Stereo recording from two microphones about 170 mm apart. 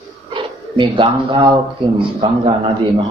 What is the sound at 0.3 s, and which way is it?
Speech, 30° right (ahead or behind).